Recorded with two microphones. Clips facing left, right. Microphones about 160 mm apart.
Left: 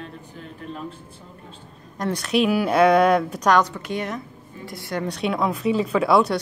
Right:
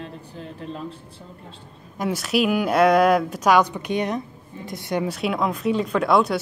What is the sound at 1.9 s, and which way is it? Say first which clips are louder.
Speech: even; 5° right (ahead or behind).